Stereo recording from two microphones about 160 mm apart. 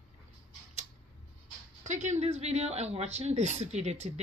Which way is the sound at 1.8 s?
45° right (ahead or behind).